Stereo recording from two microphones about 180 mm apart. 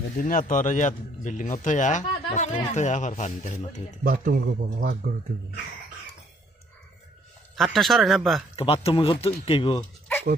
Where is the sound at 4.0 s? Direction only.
50° right (ahead or behind).